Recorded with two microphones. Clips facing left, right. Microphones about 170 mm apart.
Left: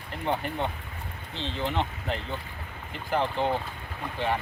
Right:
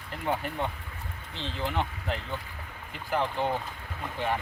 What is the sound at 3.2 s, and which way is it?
Speech, 25° left (ahead or behind).